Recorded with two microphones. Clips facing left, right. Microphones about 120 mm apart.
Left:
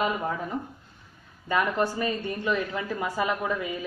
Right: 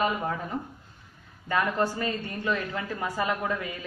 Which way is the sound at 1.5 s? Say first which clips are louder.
Left 1 dB; 15° left (ahead or behind).